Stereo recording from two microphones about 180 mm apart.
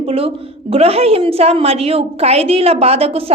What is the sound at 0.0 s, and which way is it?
A woman's voice, 30° right (ahead or behind).